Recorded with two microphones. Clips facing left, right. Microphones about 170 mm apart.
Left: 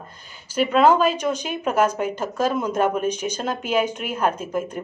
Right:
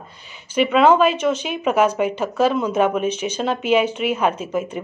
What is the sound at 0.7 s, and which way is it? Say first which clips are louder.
A woman's voice: right 2 dB; centre (ahead or behind).